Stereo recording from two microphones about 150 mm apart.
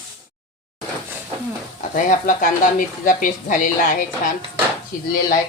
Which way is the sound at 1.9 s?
60° left (ahead or behind).